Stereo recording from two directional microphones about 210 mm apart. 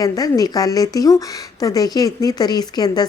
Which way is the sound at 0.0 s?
15° left (ahead or behind).